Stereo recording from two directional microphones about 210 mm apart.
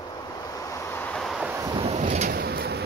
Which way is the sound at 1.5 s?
15° right (ahead or behind).